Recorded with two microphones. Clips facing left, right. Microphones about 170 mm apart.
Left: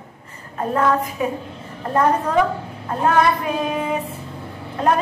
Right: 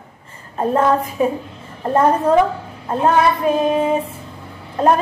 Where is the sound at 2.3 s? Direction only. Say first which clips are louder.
Right 4 dB; 30° right (ahead or behind).